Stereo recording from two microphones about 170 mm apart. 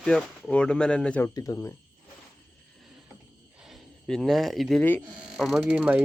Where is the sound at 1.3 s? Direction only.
20° left (ahead or behind).